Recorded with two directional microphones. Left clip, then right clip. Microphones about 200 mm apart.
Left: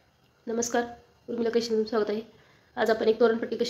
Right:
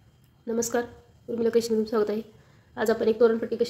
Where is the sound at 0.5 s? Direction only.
20° right (ahead or behind).